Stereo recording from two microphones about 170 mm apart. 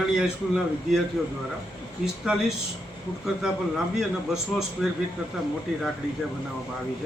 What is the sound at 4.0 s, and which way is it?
Speech, 5° right (ahead or behind).